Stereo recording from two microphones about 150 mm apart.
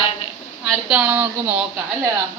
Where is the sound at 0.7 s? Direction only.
5° right (ahead or behind).